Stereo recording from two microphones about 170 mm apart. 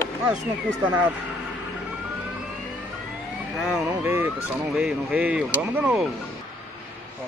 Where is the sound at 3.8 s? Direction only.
15° right (ahead or behind).